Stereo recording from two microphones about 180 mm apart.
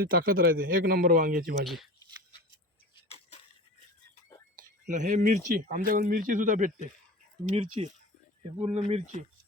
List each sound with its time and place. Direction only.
0.0 s speech: 55° right (ahead or behind)
1.6 s speech: centre (ahead or behind)
2.9 s a sound: 35° left (ahead or behind)
4.5 s speech: 45° right (ahead or behind)